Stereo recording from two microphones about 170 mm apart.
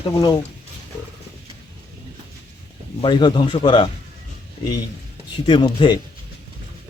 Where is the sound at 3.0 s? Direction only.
25° left (ahead or behind).